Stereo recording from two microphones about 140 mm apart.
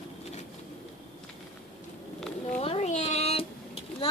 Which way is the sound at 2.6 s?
45° left (ahead or behind).